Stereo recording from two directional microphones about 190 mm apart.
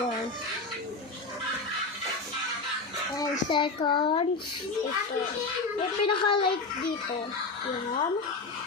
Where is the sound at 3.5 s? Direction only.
25° left (ahead or behind).